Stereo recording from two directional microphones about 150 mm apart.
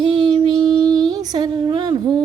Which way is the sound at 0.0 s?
30° right (ahead or behind).